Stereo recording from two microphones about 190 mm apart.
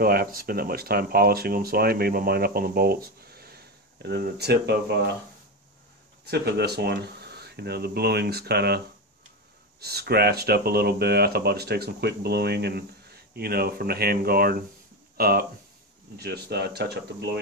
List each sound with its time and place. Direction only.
0.0 s speech: 50° right (ahead or behind)
6.3 s speech: 60° right (ahead or behind)